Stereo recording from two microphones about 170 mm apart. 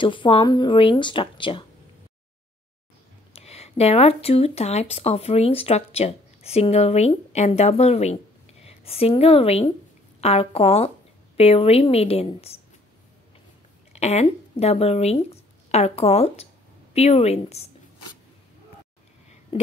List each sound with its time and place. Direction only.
0.0 s speech: 30° left (ahead or behind)
3.3 s a woman's voice: 35° left (ahead or behind)
13.9 s a woman's voice: 40° left (ahead or behind)